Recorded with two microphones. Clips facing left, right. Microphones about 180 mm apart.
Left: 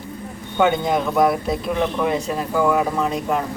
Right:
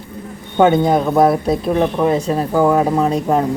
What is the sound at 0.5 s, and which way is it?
Speech, 35° right (ahead or behind).